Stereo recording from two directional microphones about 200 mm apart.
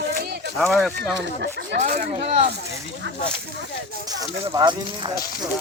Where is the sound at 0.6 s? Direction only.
Centre (ahead or behind).